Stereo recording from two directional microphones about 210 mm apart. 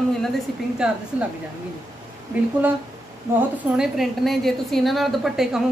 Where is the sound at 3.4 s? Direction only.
Centre (ahead or behind).